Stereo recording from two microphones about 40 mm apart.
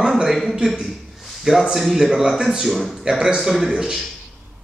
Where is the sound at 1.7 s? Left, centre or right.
Centre.